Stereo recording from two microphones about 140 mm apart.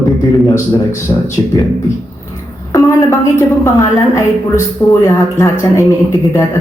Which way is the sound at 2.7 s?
25° left (ahead or behind).